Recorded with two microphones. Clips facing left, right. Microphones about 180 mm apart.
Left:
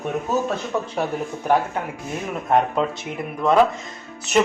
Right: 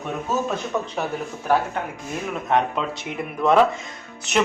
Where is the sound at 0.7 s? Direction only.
10° left (ahead or behind).